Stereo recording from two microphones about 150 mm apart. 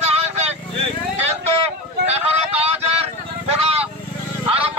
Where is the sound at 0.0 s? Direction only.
45° right (ahead or behind).